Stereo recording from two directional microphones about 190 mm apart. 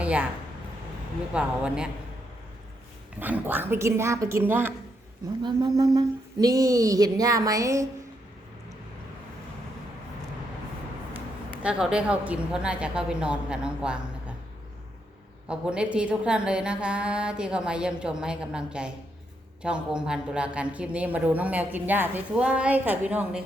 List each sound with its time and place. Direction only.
0.0 s speech: 5° right (ahead or behind)
1.3 s a woman's voice: 5° right (ahead or behind)
3.2 s a woman's voice: 10° right (ahead or behind)
5.4 s speech: 20° right (ahead or behind)
11.6 s a woman's voice: 5° right (ahead or behind)
15.4 s a woman's voice: 5° right (ahead or behind)